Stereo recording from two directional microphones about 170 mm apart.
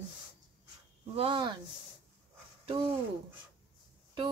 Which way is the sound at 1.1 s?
30° right (ahead or behind).